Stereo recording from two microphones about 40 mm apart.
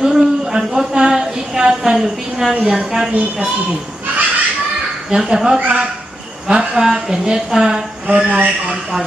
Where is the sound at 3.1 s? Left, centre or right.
Right.